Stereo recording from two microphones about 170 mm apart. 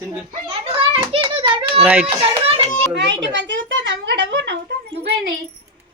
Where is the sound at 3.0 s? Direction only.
90° right.